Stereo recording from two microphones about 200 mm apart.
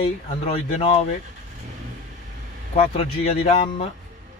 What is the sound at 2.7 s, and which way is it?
Speech, 30° left (ahead or behind).